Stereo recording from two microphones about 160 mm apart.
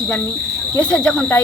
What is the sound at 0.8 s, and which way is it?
Speech, 10° left (ahead or behind).